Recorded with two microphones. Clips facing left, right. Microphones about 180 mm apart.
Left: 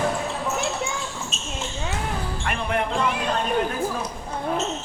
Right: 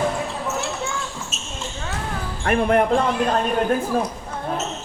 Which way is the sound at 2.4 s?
45° right (ahead or behind).